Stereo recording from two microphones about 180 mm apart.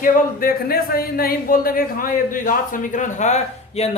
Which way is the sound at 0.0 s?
55° left (ahead or behind).